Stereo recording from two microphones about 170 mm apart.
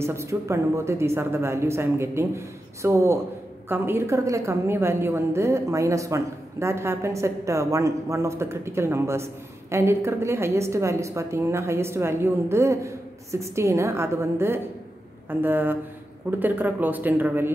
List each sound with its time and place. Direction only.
0.0 s a woman's voice: 15° right (ahead or behind)